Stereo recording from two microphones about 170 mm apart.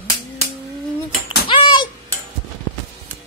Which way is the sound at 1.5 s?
30° left (ahead or behind).